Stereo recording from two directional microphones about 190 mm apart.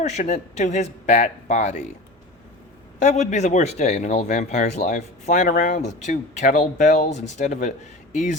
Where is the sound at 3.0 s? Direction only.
35° left (ahead or behind).